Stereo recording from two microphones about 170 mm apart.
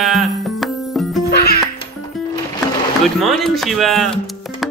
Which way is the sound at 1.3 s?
70° left (ahead or behind).